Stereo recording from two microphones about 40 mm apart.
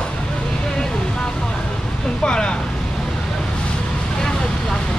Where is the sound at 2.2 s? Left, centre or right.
Left.